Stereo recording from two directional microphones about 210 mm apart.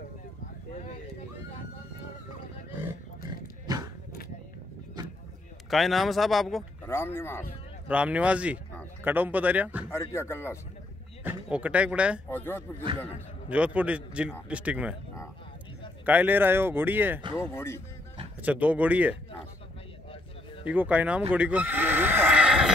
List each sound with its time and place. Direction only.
3.6 s a sound: 15° right (ahead or behind)
5.7 s speech: centre (ahead or behind)
6.9 s speech: 10° left (ahead or behind)
7.9 s speech: 5° right (ahead or behind)
9.8 s speech: 10° left (ahead or behind)
11.2 s speech: 5° right (ahead or behind)
12.3 s speech: 10° left (ahead or behind)
13.5 s speech: 5° right (ahead or behind)
16.1 s speech: 10° right (ahead or behind)
17.4 s speech: 10° left (ahead or behind)
18.4 s speech: 5° right (ahead or behind)
20.6 s speech: 5° right (ahead or behind)